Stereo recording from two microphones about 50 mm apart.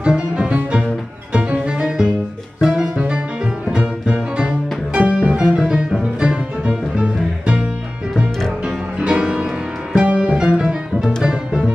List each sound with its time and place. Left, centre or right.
0.0 s music: centre
8.6 s music: centre